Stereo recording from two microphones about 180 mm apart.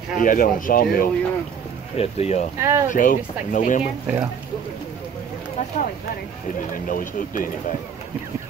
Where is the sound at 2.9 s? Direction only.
50° left (ahead or behind).